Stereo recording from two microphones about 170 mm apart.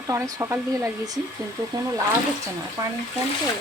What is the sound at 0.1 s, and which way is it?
Speech, 15° right (ahead or behind).